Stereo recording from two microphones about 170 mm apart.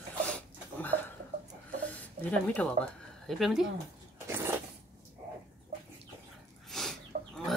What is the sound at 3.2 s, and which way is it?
Speech, centre (ahead or behind).